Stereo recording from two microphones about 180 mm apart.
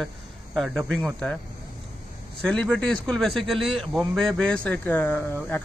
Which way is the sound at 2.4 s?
5° left (ahead or behind).